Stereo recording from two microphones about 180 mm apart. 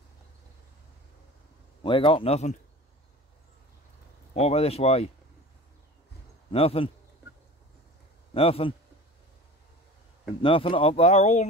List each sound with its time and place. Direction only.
1.8 s a man's voice: 30° left (ahead or behind)
4.3 s speech: 35° left (ahead or behind)
6.5 s speech: 30° left (ahead or behind)
8.3 s a man's voice: 30° left (ahead or behind)
10.4 s speech: 30° left (ahead or behind)